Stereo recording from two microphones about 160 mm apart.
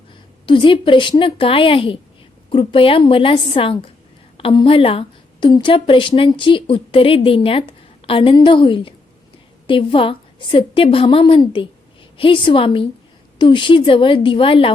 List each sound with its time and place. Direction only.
0.4 s a woman's voice: 30° left (ahead or behind)